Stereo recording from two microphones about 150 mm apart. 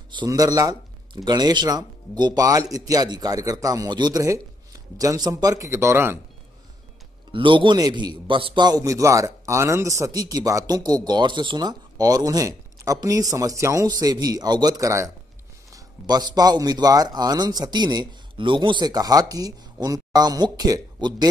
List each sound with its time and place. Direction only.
0.1 s a man's voice: 25° right (ahead or behind)
7.3 s a man's voice: 35° right (ahead or behind)